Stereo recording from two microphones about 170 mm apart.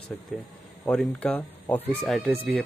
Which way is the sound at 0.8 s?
5° left (ahead or behind).